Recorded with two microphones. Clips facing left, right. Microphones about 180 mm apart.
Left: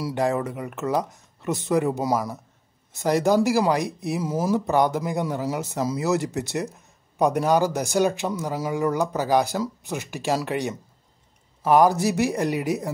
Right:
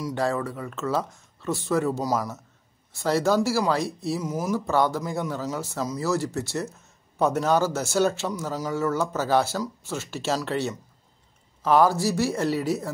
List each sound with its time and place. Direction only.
0.1 s speech: 20° left (ahead or behind)
4.2 s speech: 30° left (ahead or behind)
4.6 s speech: 15° left (ahead or behind)